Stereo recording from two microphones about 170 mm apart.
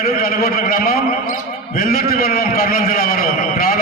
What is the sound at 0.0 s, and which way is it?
A man's voice, 60° left (ahead or behind).